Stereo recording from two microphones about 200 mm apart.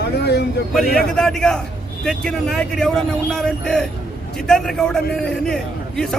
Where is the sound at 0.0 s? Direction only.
55° left (ahead or behind).